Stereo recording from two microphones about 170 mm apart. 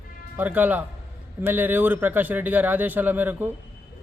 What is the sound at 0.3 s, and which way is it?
A man's voice, 10° right (ahead or behind).